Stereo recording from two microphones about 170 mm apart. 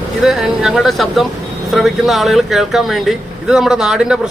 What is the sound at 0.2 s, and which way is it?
A man's voice, centre (ahead or behind).